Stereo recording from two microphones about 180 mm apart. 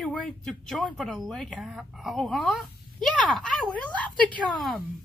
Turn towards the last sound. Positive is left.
turn(degrees=5)  # may be behind; listen again after turning